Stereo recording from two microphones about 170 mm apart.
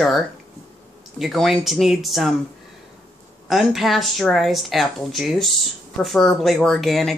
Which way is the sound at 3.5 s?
Centre (ahead or behind).